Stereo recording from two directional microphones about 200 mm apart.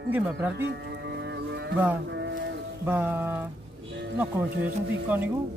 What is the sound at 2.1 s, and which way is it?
Sheep, 60° right (ahead or behind).